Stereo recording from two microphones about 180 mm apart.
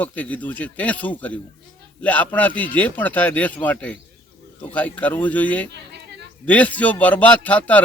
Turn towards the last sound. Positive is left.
turn(degrees=10)  # may be behind; listen again after turning